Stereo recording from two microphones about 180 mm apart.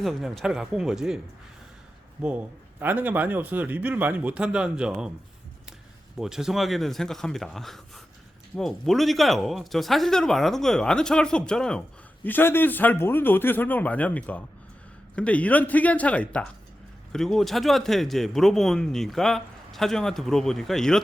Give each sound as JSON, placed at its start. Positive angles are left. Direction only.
{"t": 0.0, "sound": "speech", "side_deg": 0}
{"t": 6.1, "sound": "a man's voice", "side_deg": -5}